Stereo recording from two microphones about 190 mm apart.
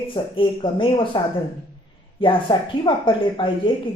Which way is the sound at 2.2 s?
25° left (ahead or behind).